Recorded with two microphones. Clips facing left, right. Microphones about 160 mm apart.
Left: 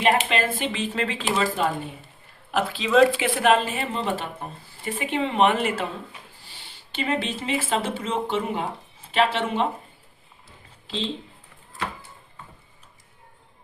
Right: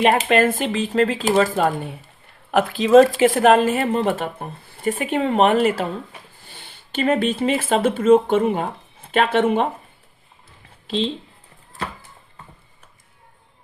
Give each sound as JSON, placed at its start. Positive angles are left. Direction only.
{"t": 0.2, "sound": "speech", "side_deg": -50}
{"t": 6.5, "sound": "speech", "side_deg": -50}